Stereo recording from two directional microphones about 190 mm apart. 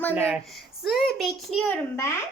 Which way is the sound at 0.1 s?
10° right (ahead or behind).